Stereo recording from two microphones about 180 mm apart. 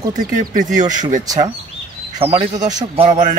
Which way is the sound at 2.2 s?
35° right (ahead or behind).